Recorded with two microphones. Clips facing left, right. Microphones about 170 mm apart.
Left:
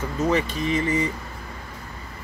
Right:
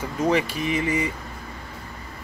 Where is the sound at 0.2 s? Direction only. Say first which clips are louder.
Right 1 dB; 15° right (ahead or behind).